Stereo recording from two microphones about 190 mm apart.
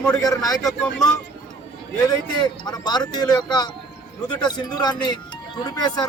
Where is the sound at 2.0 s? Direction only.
20° left (ahead or behind).